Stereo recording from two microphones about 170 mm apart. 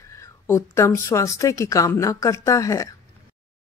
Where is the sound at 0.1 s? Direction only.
20° left (ahead or behind).